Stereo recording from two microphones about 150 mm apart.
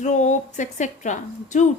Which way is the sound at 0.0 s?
55° left (ahead or behind).